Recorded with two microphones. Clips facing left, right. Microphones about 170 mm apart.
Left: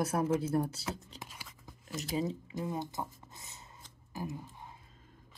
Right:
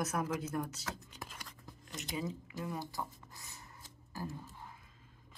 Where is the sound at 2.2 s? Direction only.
30° left (ahead or behind).